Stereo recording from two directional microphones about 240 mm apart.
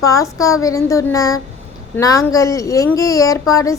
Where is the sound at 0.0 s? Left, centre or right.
Centre.